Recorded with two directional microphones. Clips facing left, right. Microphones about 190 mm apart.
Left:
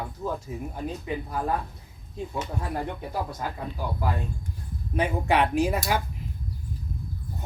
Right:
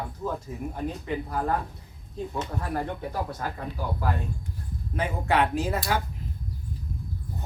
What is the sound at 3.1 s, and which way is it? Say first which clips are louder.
Speech: even; 15° left (ahead or behind).